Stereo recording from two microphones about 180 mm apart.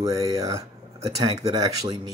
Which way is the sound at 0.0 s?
20° right (ahead or behind).